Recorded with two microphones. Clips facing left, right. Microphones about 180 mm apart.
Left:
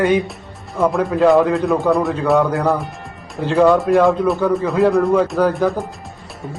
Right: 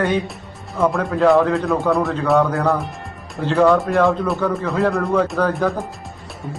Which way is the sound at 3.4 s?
15° left (ahead or behind).